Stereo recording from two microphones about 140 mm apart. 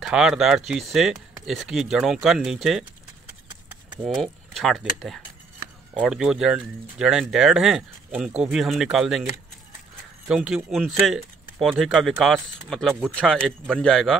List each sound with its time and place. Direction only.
0.0 s speech: 5° right (ahead or behind)
4.0 s speech: centre (ahead or behind)